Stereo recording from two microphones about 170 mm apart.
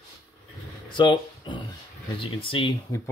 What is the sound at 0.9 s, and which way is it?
Speech, 30° left (ahead or behind).